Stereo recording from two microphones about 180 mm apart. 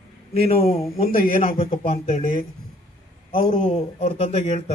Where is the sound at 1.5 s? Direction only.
50° left (ahead or behind).